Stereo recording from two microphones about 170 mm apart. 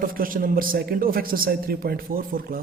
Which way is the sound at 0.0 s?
55° right (ahead or behind).